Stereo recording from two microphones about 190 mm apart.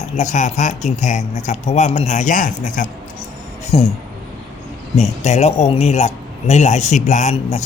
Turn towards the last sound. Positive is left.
turn(degrees=35)  # may be behind; listen again after turning